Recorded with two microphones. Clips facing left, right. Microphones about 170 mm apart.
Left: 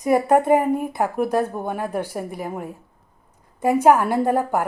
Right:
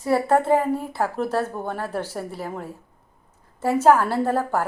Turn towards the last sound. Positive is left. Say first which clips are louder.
# left 2 dB
turn(degrees=15)  # may be behind; listen again after turning